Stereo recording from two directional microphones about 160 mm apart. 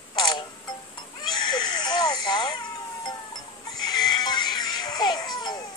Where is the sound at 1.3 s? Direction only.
25° left (ahead or behind).